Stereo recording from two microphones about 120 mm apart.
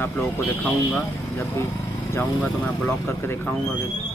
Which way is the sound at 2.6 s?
15° left (ahead or behind).